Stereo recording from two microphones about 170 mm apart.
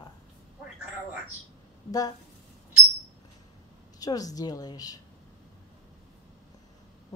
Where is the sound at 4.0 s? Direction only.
20° left (ahead or behind).